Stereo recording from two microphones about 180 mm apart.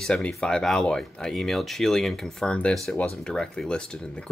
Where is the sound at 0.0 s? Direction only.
5° left (ahead or behind).